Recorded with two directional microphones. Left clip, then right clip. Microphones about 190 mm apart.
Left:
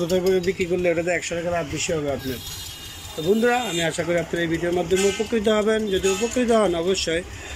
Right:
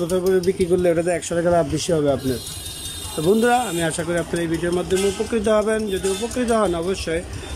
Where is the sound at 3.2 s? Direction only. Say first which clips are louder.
Right 3 dB; 10° right (ahead or behind).